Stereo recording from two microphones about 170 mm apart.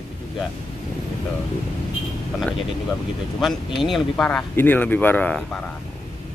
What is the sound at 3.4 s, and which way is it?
Speech, centre (ahead or behind).